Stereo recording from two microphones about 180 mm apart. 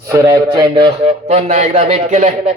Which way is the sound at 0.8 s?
30° right (ahead or behind).